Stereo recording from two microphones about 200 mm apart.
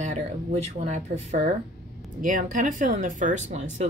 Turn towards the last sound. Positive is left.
turn(degrees=-35)  # may be behind; listen again after turning